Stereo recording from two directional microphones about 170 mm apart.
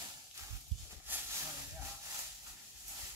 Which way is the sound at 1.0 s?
10° right (ahead or behind).